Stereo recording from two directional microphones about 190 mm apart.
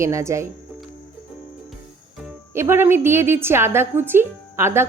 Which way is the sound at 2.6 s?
15° right (ahead or behind).